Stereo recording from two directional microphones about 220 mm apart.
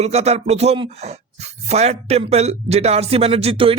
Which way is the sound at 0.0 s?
30° right (ahead or behind).